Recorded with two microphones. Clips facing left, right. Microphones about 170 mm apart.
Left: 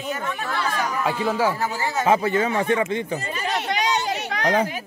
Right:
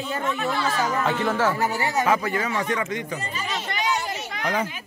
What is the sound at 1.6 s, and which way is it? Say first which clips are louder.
Speech: right 1 dB; 20° right (ahead or behind).